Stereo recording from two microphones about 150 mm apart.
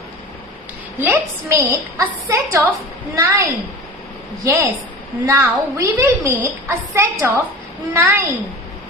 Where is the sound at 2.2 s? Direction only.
15° right (ahead or behind).